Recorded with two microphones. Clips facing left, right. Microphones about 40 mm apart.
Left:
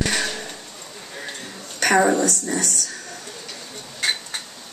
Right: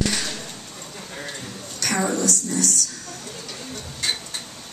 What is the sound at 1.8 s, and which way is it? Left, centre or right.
Speech, left.